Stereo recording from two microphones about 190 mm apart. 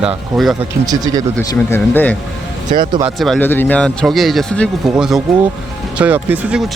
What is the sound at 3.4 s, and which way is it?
Speech, 10° left (ahead or behind).